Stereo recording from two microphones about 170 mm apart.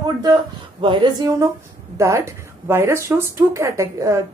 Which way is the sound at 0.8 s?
25° right (ahead or behind).